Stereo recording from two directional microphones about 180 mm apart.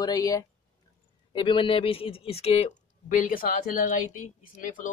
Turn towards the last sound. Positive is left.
turn(degrees=45)  # may be behind; listen again after turning